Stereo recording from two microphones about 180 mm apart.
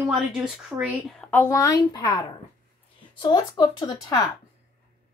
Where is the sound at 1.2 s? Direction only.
10° left (ahead or behind).